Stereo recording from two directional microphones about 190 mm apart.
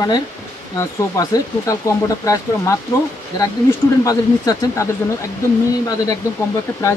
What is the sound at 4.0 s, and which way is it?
Speech, 20° left (ahead or behind).